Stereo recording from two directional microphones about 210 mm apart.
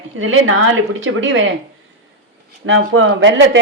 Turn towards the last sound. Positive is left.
turn(degrees=-60)  # may be behind; listen again after turning